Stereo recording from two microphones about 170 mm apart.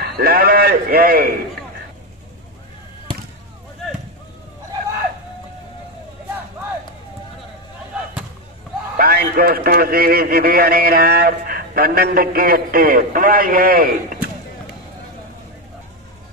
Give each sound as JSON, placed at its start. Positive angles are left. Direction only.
{"t": 0.0, "sound": "a man's voice", "side_deg": -60}
{"t": 8.9, "sound": "a man's voice", "side_deg": -60}